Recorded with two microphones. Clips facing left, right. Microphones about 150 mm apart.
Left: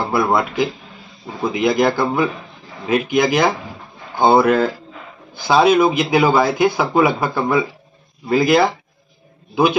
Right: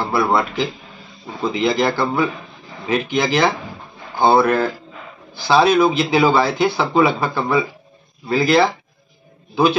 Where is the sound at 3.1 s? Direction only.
10° left (ahead or behind).